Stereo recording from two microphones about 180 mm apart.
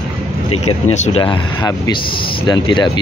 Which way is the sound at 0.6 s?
35° left (ahead or behind).